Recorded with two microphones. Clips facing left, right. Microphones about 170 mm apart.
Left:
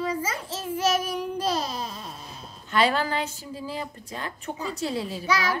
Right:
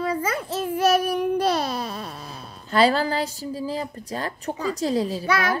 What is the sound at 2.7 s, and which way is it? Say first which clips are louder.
A woman's voice: right 4 dB; 35° right (ahead or behind).